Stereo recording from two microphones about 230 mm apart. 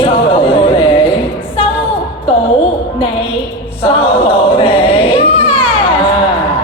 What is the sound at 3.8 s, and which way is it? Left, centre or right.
Choir, left.